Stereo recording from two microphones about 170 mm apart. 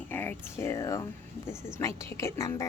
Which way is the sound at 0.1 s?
10° left (ahead or behind).